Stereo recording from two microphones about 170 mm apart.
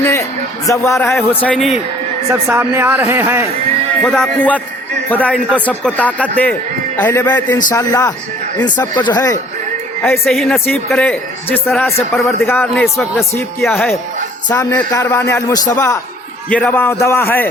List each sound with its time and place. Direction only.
0.0 s a man's voice: 15° left (ahead or behind)
1.0 s speech: 5° left (ahead or behind)
2.3 s a man's voice: 10° right (ahead or behind)
4.0 s a man's voice: 5° left (ahead or behind)